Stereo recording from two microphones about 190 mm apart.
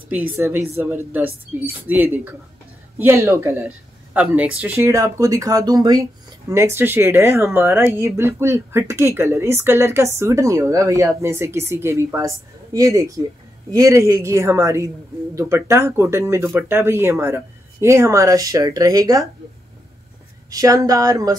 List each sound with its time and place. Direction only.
0.4 s speech: 15° right (ahead or behind)
20.4 s speech: 20° right (ahead or behind)